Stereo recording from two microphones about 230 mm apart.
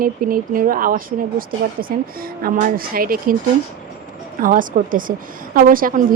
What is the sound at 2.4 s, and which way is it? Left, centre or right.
Speech, right.